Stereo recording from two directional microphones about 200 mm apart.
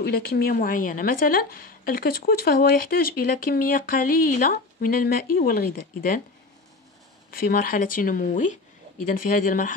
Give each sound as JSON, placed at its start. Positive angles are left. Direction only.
{"t": 0.0, "sound": "a woman's voice", "side_deg": 50}
{"t": 7.2, "sound": "a woman's voice", "side_deg": 45}